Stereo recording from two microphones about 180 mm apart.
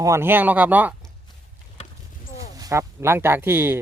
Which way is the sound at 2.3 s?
20° right (ahead or behind).